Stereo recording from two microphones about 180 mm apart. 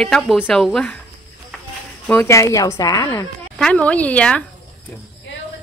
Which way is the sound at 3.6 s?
5° left (ahead or behind).